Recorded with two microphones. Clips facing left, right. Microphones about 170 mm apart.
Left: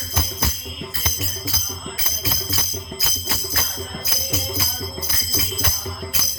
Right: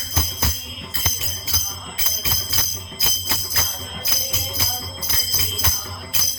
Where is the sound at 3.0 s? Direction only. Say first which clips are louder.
Left 2 dB; 25° right (ahead or behind).